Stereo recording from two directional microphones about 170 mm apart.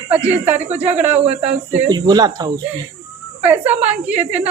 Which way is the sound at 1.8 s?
25° right (ahead or behind).